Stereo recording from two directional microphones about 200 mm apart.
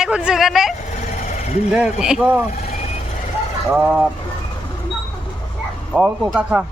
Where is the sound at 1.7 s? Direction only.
5° right (ahead or behind).